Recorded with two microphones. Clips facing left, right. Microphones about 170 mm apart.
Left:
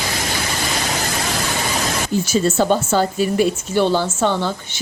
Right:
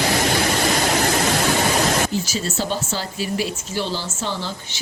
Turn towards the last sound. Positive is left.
turn(degrees=55)  # may be behind; listen again after turning